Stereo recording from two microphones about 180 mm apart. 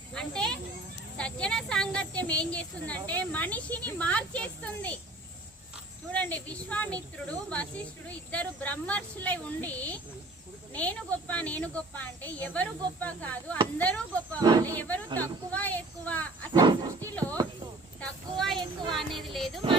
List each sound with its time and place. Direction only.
0.1 s children playing: 5° left (ahead or behind)
1.1 s speech: 5° left (ahead or behind)
6.1 s speech: 10° left (ahead or behind)
14.4 s speech: 20° right (ahead or behind)
14.8 s speech: 10° left (ahead or behind)
16.5 s wild animals: 25° right (ahead or behind)
17.1 s a sound: 10° left (ahead or behind)